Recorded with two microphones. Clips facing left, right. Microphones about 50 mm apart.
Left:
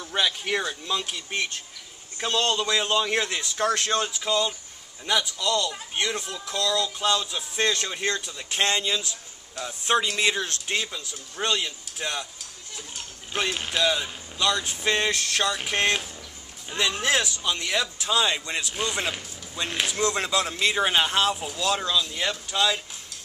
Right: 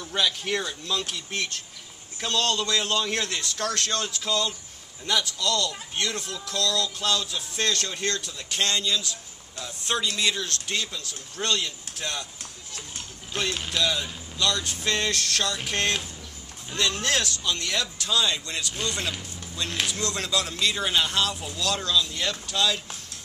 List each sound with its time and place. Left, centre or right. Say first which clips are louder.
0.0 s speech: even; centre
13.3 s speech: left 2 dB; centre